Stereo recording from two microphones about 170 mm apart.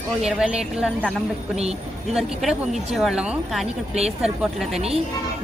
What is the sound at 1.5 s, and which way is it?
Speech, 40° right (ahead or behind).